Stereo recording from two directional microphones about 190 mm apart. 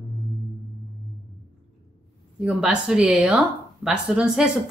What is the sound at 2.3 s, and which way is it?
Speech, 5° right (ahead or behind).